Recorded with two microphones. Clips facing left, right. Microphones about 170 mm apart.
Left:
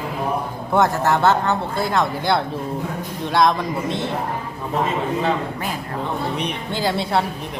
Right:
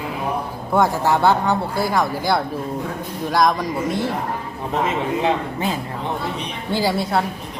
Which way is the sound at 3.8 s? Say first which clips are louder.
Right 2 dB; 25° left (ahead or behind).